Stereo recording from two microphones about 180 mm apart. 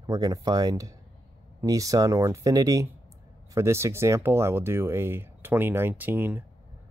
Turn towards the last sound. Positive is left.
turn(degrees=-10)  # may be behind; listen again after turning